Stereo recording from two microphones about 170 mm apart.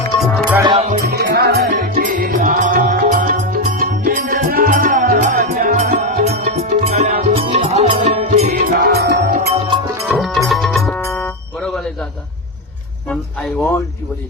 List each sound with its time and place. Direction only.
0.2 s music: 10° left (ahead or behind)
0.6 s music: 30° right (ahead or behind)
1.2 s music: 75° right (ahead or behind)
9.6 s music: 30° right (ahead or behind)
10.1 s music: centre (ahead or behind)
13.1 s music: 5° left (ahead or behind)